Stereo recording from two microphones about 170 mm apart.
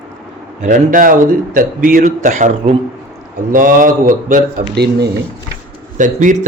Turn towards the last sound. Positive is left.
turn(degrees=-50)  # may be behind; listen again after turning